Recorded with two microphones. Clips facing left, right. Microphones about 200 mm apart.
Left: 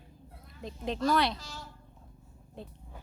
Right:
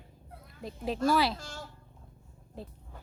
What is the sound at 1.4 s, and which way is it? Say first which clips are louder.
Speech: right 3 dB; 50° right (ahead or behind).